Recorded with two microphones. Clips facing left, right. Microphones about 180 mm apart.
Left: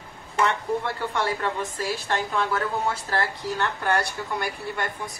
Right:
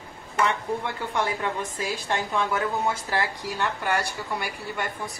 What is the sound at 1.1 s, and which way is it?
A woman's voice, 15° right (ahead or behind).